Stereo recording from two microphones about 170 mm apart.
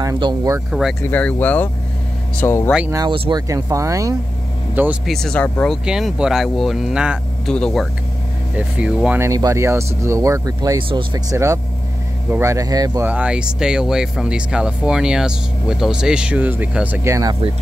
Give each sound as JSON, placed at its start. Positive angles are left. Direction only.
{"t": 0.0, "sound": "speech", "side_deg": -20}
{"t": 0.7, "sound": "speech", "side_deg": 0}
{"t": 1.0, "sound": "speech", "side_deg": 10}
{"t": 2.9, "sound": "speech", "side_deg": -25}
{"t": 5.1, "sound": "speech", "side_deg": 5}
{"t": 5.9, "sound": "speech", "side_deg": -5}
{"t": 13.0, "sound": "speech", "side_deg": -10}